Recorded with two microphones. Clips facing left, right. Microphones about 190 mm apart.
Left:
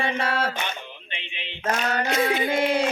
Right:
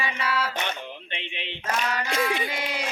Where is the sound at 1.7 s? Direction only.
50° left (ahead or behind).